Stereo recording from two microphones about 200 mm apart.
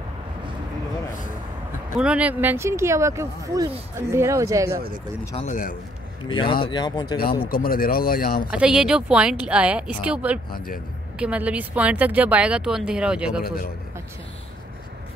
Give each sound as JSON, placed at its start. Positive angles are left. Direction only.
{"t": 2.0, "sound": "speech", "side_deg": -5}
{"t": 5.3, "sound": "speech", "side_deg": 35}
{"t": 6.2, "sound": "speech", "side_deg": 25}
{"t": 7.4, "sound": "speech", "side_deg": 45}
{"t": 8.5, "sound": "a woman's voice", "side_deg": -5}
{"t": 10.5, "sound": "speech", "side_deg": 45}
{"t": 11.1, "sound": "a woman's voice", "side_deg": -5}
{"t": 13.4, "sound": "speech", "side_deg": 50}